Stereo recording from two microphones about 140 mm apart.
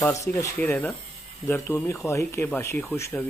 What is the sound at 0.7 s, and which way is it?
Speech, 10° left (ahead or behind).